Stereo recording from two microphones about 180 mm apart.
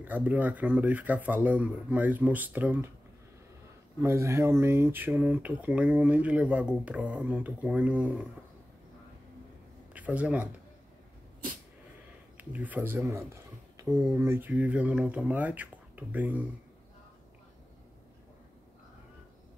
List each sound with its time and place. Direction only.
0.0 s speech: 10° right (ahead or behind)
4.0 s speech: 15° right (ahead or behind)
9.9 s speech: 10° right (ahead or behind)
12.4 s speech: 10° right (ahead or behind)
13.3 s a sound: 15° right (ahead or behind)
14.0 s speech: 15° right (ahead or behind)